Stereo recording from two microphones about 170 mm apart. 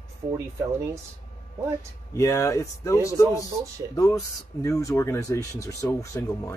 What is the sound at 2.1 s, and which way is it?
Speech, 15° left (ahead or behind).